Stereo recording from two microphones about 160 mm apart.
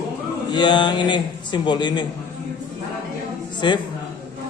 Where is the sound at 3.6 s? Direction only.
30° left (ahead or behind).